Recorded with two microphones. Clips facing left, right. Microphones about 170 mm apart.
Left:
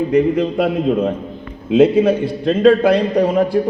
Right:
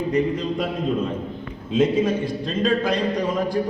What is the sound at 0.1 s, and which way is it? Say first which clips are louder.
A man's voice: left 6 dB; 60° left (ahead or behind).